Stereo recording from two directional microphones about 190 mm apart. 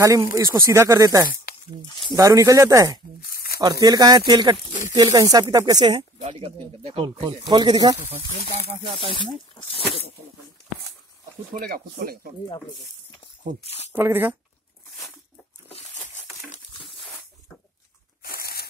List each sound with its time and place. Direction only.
0.0 s speech: 15° right (ahead or behind)
1.9 s speech: 25° left (ahead or behind)
2.1 s speech: 15° right (ahead or behind)
3.2 s tearing: 50° left (ahead or behind)
3.8 s speech: 20° right (ahead or behind)
9.0 s speech: 25° left (ahead or behind)
11.5 s speech: 50° right (ahead or behind)
13.7 s speech: 35° left (ahead or behind)
13.9 s speech: 10° right (ahead or behind)
16.4 s a sound: 40° left (ahead or behind)
18.2 s tearing: 50° left (ahead or behind)